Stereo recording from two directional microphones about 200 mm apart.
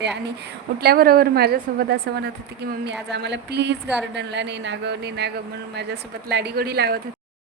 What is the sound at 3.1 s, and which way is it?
A woman's voice, 60° right (ahead or behind).